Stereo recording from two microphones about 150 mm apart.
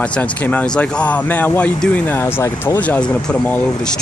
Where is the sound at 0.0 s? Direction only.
10° left (ahead or behind).